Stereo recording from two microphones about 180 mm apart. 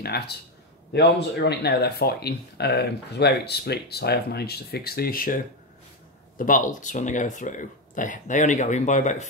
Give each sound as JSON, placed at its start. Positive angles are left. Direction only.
{"t": 0.9, "sound": "speech", "side_deg": 65}